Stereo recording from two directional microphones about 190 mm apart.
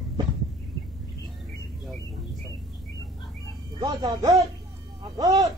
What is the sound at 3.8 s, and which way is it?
Speech, 20° right (ahead or behind).